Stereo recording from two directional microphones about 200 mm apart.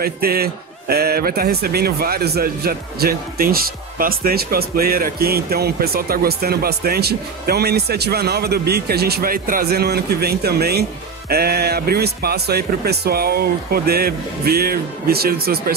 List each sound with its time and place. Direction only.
0.0 s a man's voice: 50° right (ahead or behind)